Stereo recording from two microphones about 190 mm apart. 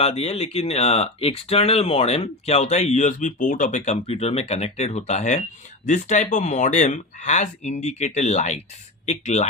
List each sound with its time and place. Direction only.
0.0 s speech: 30° left (ahead or behind)